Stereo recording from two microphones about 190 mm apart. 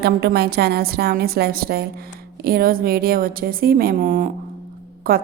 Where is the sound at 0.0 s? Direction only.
55° right (ahead or behind).